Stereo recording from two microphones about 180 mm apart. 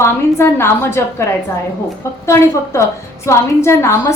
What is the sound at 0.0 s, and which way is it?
A woman's voice, 15° left (ahead or behind).